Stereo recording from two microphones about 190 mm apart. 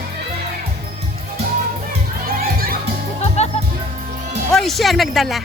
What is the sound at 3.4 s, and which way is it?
Music, 35° left (ahead or behind).